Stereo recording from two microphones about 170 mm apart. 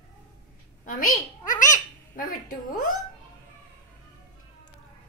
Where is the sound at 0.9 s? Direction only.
55° left (ahead or behind).